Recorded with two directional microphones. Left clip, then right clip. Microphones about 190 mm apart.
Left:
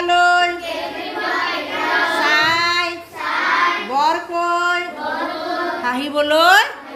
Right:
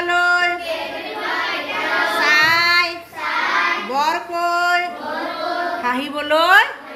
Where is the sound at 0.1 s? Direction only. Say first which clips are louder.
Left 3 dB; 20° left (ahead or behind).